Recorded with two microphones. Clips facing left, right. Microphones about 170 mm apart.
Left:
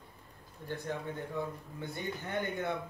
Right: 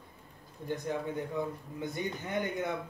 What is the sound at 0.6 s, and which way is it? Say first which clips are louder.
Speech: right 4 dB; 15° right (ahead or behind).